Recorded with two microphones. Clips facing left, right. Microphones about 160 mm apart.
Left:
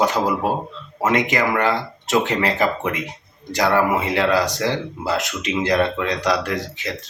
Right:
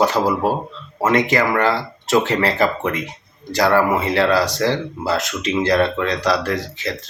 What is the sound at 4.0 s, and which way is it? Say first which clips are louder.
Speech: right 2 dB; 15° left (ahead or behind).